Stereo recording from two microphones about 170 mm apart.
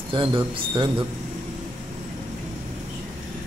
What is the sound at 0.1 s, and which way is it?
Speech, 30° right (ahead or behind).